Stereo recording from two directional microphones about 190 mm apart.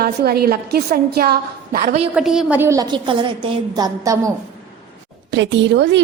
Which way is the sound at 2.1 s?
5° right (ahead or behind).